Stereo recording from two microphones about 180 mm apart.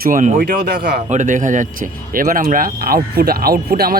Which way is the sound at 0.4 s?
65° right (ahead or behind).